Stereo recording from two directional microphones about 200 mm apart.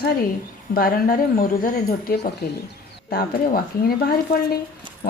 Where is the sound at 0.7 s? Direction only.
45° left (ahead or behind).